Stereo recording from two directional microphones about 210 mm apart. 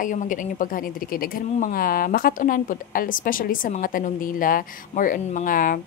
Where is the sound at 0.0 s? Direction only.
40° left (ahead or behind).